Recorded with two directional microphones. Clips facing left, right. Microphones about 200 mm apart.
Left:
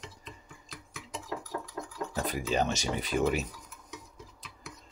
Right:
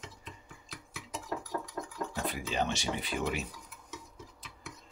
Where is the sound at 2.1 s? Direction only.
40° left (ahead or behind).